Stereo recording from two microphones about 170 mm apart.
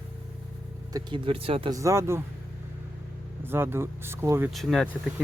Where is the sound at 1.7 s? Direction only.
20° right (ahead or behind).